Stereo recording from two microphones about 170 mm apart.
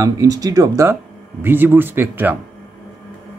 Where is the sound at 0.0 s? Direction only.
20° right (ahead or behind).